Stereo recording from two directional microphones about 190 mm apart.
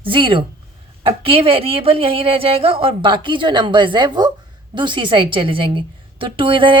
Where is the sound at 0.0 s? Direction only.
25° right (ahead or behind).